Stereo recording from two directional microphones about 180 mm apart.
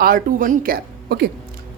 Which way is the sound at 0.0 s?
50° right (ahead or behind).